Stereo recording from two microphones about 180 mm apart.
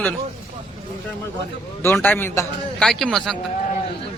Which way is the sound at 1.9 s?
10° left (ahead or behind).